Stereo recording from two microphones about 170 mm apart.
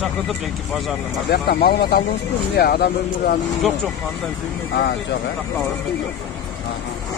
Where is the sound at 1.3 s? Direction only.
70° left (ahead or behind).